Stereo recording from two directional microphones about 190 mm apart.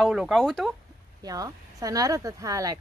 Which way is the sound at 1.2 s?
20° right (ahead or behind).